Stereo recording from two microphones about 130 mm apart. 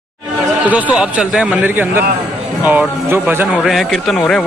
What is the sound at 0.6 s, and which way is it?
Speech, 10° right (ahead or behind).